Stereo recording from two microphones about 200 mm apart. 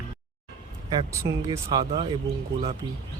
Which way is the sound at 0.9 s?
15° right (ahead or behind).